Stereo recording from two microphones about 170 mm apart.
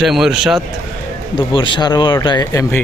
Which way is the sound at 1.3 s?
30° left (ahead or behind).